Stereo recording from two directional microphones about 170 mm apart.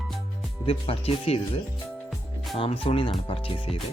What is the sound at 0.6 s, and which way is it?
Speech, 35° left (ahead or behind).